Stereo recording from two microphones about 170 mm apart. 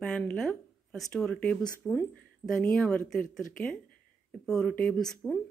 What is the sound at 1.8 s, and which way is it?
Speech, 15° left (ahead or behind).